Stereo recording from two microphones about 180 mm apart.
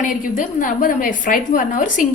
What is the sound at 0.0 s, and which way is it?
A woman's voice, 45° left (ahead or behind).